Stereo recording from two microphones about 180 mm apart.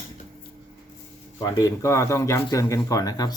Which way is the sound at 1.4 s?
20° left (ahead or behind).